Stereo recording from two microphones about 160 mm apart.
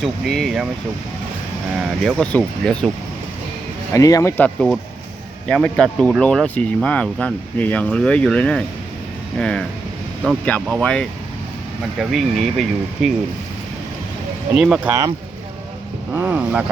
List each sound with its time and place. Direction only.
0.0 s speech: centre (ahead or behind)
2.0 s speech: 5° left (ahead or behind)
3.9 s speech: 20° left (ahead or behind)
5.5 s speech: 5° left (ahead or behind)
14.5 s speech: 5° right (ahead or behind)
16.1 s speech: 10° right (ahead or behind)